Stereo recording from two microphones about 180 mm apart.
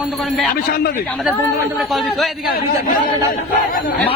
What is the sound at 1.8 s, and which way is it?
Speech, centre (ahead or behind).